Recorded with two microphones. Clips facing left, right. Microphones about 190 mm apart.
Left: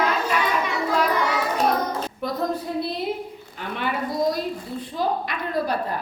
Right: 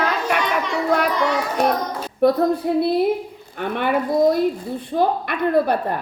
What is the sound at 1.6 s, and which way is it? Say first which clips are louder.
Child singing: right 2 dB; 65° right (ahead or behind).